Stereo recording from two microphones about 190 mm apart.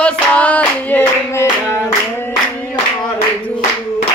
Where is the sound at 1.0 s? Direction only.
15° left (ahead or behind).